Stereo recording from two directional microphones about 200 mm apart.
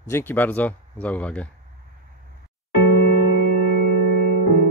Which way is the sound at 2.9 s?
55° left (ahead or behind).